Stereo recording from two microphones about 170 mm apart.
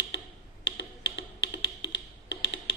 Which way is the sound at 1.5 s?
90° left.